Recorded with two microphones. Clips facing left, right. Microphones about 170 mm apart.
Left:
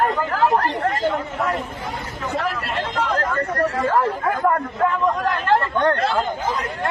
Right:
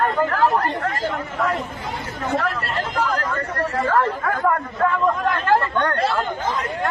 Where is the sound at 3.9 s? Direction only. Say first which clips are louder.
Left 1 dB; 15° left (ahead or behind).